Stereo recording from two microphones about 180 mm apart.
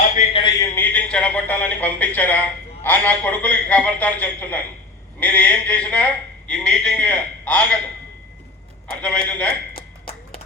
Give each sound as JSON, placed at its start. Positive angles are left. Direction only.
{"t": 0.2, "sound": "a sound", "side_deg": 30}
{"t": 0.8, "sound": "a man's voice", "side_deg": 10}
{"t": 9.0, "sound": "a man's voice", "side_deg": 5}